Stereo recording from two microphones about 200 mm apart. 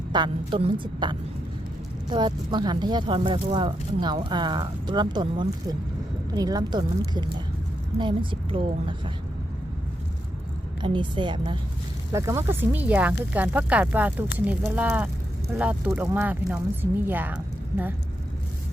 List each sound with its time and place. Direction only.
0.1 s speech: 25° right (ahead or behind)
10.8 s speech: 25° right (ahead or behind)